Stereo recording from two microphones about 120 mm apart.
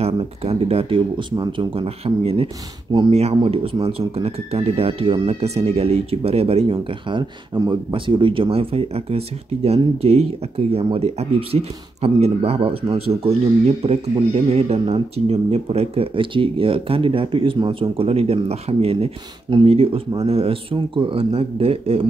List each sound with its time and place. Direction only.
0.0 s speech: 55° right (ahead or behind)
3.1 s speech: 60° right (ahead or behind)